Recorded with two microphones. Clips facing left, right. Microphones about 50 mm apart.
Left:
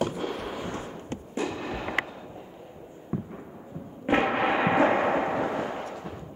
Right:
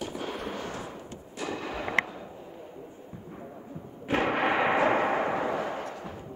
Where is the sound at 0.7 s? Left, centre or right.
Left.